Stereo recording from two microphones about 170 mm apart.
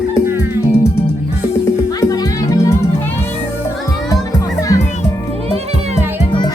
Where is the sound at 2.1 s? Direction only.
20° left (ahead or behind).